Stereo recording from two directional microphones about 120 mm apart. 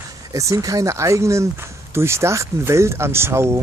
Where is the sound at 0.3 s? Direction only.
25° right (ahead or behind).